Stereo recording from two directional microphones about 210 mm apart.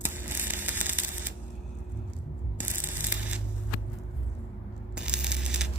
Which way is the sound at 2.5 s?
10° right (ahead or behind).